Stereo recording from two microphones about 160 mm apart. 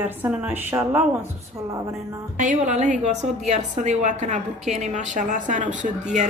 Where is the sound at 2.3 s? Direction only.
50° right (ahead or behind).